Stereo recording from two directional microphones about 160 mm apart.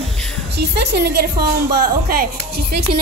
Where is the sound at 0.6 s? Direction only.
85° right.